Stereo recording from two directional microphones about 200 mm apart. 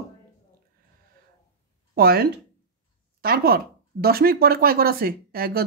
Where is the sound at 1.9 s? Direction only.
50° right (ahead or behind).